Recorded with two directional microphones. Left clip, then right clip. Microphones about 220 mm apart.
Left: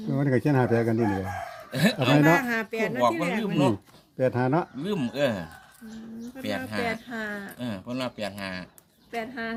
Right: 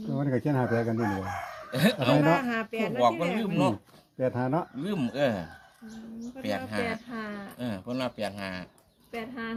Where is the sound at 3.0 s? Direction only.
Centre (ahead or behind).